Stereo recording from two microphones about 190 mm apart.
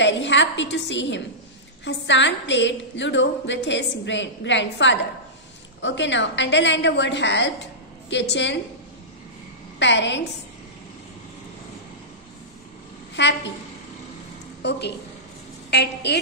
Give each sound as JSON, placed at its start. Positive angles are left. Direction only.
{"t": 0.0, "sound": "a woman's voice", "side_deg": 70}
{"t": 9.8, "sound": "a woman's voice", "side_deg": 70}
{"t": 13.2, "sound": "a woman's voice", "side_deg": 65}
{"t": 14.6, "sound": "a woman's voice", "side_deg": 65}